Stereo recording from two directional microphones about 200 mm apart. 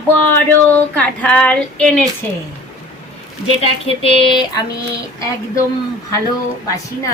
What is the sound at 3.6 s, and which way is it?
Speech, 30° left (ahead or behind).